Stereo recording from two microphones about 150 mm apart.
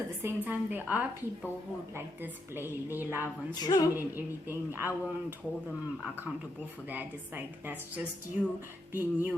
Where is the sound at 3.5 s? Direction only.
25° left (ahead or behind).